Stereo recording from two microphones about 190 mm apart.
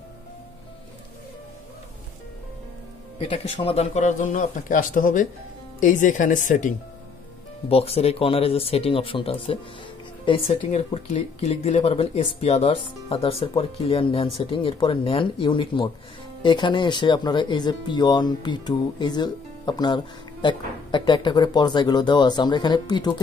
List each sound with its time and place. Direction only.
3.2 s speech: 30° left (ahead or behind)
7.6 s speech: 30° left (ahead or behind)